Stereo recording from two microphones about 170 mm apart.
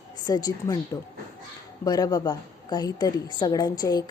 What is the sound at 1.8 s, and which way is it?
A woman's voice, 20° left (ahead or behind).